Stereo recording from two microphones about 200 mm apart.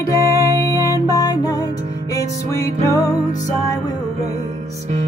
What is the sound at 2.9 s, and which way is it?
Music, 15° left (ahead or behind).